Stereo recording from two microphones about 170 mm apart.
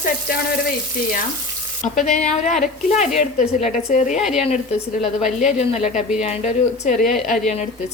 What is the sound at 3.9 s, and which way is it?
Speech, 45° left (ahead or behind).